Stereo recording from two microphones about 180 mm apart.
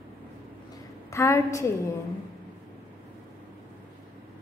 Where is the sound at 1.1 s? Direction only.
15° left (ahead or behind).